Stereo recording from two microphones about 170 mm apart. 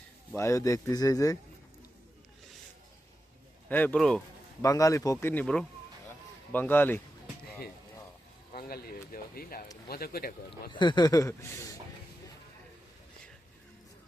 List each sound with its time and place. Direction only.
0.3 s speech: 20° left (ahead or behind)
3.7 s speech: 10° left (ahead or behind)
4.6 s speech: 20° left (ahead or behind)
8.5 s speech: 60° left (ahead or behind)
10.7 s speech: 25° left (ahead or behind)